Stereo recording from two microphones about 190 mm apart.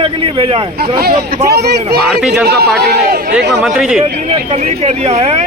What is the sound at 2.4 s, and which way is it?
Speech, 55° right (ahead or behind).